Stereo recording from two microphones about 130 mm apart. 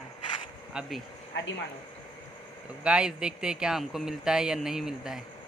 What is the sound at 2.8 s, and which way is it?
Speech, 10° right (ahead or behind).